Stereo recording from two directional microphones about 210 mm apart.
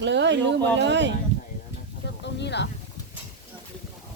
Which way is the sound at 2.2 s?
55° left (ahead or behind).